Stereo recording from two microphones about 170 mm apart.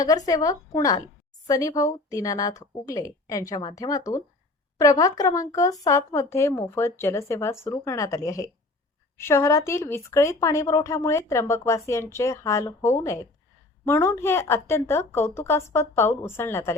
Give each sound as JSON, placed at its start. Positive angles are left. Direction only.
{"t": 0.0, "sound": "a woman's voice", "side_deg": 20}